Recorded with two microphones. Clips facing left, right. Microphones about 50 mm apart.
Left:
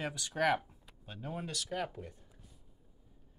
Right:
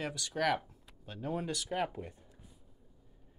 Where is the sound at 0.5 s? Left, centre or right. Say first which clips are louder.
Left 1 dB; centre.